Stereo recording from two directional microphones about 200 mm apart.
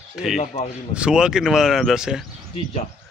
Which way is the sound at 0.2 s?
5° right (ahead or behind).